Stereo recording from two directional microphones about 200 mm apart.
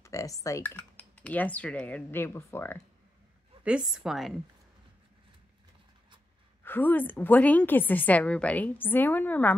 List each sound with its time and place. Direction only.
0.0 s speech: 15° left (ahead or behind)
3.6 s a woman's voice: 5° right (ahead or behind)
6.6 s a woman's voice: 10° left (ahead or behind)